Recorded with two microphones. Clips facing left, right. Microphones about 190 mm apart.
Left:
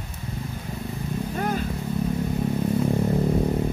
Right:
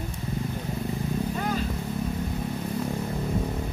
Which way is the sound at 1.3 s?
50° left (ahead or behind).